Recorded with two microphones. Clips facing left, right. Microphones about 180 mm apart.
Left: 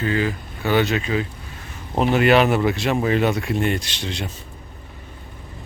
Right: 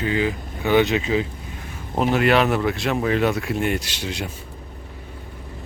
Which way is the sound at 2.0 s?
Centre (ahead or behind).